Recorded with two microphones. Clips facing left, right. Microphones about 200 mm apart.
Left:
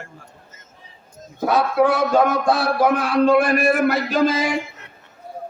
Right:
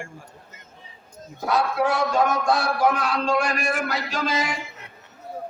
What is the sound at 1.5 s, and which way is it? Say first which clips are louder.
A man's voice: left 5 dB; 55° left (ahead or behind).